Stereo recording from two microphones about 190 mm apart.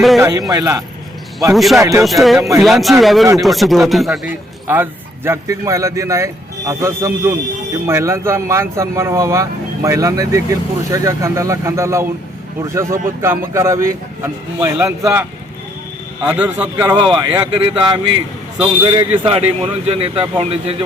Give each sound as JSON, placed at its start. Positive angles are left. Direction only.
{"t": 0.2, "sound": "speech", "side_deg": -20}
{"t": 1.5, "sound": "speech", "side_deg": 0}
{"t": 1.8, "sound": "speech", "side_deg": -15}
{"t": 2.0, "sound": "speech", "side_deg": 0}
{"t": 4.6, "sound": "speech", "side_deg": -10}
{"t": 16.9, "sound": "speech", "side_deg": -25}